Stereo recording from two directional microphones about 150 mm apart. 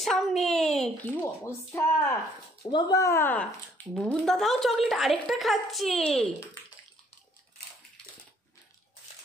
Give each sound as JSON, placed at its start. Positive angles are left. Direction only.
{"t": 0.0, "sound": "a child's voice", "side_deg": 0}
{"t": 1.2, "sound": "speech", "side_deg": 20}